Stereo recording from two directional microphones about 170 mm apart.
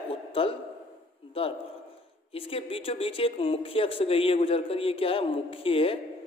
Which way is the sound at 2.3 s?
35° left (ahead or behind).